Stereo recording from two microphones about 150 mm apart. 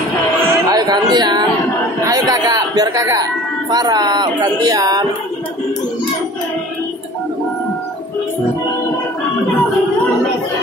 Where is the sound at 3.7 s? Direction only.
25° right (ahead or behind).